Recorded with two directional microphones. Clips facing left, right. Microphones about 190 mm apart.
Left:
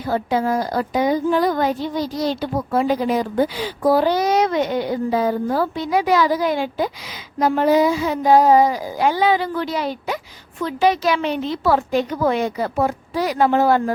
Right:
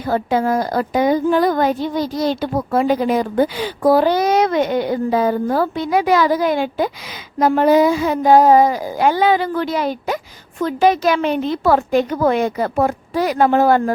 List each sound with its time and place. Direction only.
0.1 s a woman's voice: 55° right (ahead or behind)